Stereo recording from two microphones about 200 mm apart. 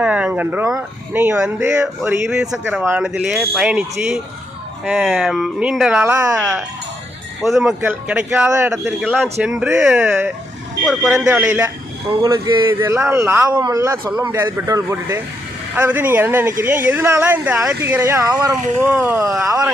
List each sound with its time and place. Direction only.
0.0 s speech: 5° right (ahead or behind)
12.2 s speech: 20° right (ahead or behind)
19.5 s speech: 15° right (ahead or behind)